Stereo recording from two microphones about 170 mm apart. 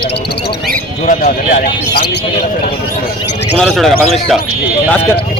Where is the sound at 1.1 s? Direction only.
55° left (ahead or behind).